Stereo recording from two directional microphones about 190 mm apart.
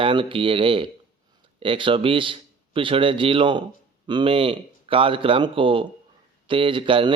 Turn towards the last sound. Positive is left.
turn(degrees=-25)  # may be behind; listen again after turning